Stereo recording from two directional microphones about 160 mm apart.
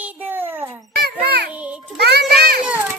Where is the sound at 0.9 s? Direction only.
75° right (ahead or behind).